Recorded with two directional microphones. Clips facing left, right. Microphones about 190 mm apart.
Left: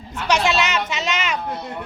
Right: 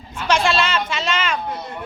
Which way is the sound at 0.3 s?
15° left (ahead or behind).